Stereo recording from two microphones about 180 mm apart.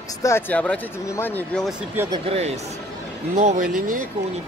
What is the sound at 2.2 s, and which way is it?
Speech, 35° right (ahead or behind).